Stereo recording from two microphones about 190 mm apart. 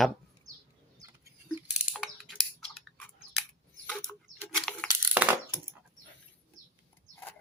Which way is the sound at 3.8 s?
5° left (ahead or behind).